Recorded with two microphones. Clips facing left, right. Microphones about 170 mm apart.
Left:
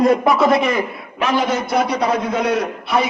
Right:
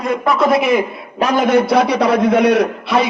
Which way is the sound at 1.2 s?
40° right (ahead or behind).